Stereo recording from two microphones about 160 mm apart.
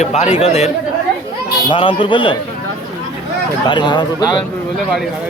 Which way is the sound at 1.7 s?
30° left (ahead or behind).